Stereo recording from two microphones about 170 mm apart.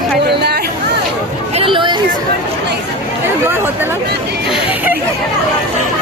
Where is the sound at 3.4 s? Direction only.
15° right (ahead or behind).